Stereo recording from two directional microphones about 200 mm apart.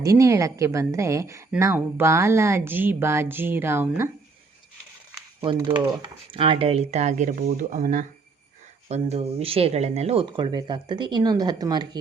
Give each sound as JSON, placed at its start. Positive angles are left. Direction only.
{"t": 0.0, "sound": "a woman's voice", "side_deg": -15}
{"t": 5.4, "sound": "speech", "side_deg": -25}